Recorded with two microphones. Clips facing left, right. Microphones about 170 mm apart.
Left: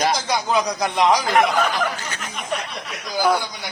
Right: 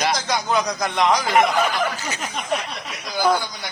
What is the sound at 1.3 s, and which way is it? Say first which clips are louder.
Speech: even; 5° right (ahead or behind).